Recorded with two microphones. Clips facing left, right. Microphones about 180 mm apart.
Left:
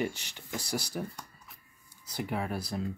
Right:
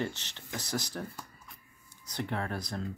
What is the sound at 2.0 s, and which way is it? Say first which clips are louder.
Speech: left 1 dB; 10° left (ahead or behind).